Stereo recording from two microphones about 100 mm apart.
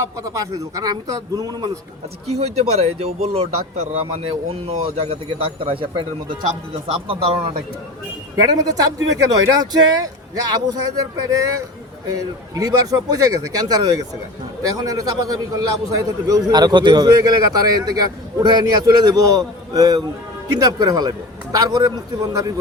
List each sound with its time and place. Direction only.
0.0 s a man's voice: 35° right (ahead or behind)
2.2 s a man's voice: 90° right; by 6.1 s 60° right (ahead or behind)
6.9 s speech: 70° right (ahead or behind)
8.4 s a man's voice: 35° right (ahead or behind)
16.5 s a man's voice: 45° right (ahead or behind)